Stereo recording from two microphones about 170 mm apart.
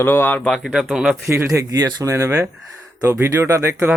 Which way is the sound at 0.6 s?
5° right (ahead or behind).